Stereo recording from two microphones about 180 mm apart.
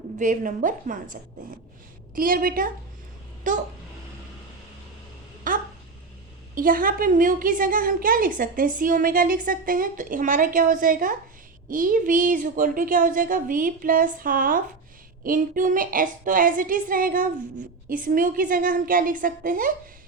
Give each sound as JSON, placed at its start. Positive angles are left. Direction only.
{"t": 0.2, "sound": "a woman's voice", "side_deg": -45}
{"t": 2.1, "sound": "a woman's voice", "side_deg": -50}
{"t": 5.5, "sound": "a sound", "side_deg": -50}
{"t": 6.5, "sound": "a woman's voice", "side_deg": -50}